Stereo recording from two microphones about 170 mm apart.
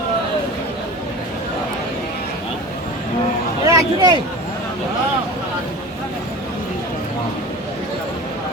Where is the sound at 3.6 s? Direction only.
20° right (ahead or behind).